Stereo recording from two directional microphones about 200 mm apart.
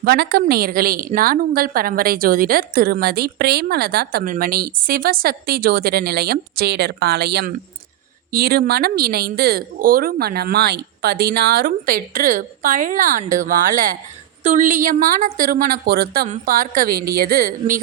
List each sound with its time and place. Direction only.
0.0 s a woman's voice: 50° right (ahead or behind)